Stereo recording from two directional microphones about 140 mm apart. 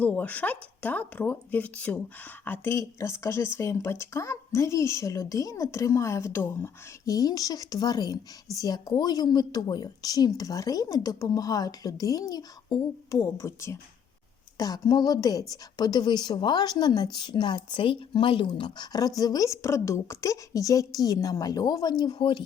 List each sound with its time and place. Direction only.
0.0 s a woman's voice: 10° left (ahead or behind); by 22.4 s 35° left (ahead or behind)